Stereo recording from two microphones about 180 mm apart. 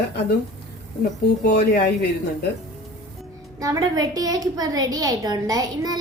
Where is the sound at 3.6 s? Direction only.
20° right (ahead or behind).